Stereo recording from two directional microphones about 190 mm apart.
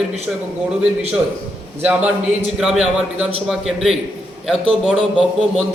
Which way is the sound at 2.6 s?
Centre (ahead or behind).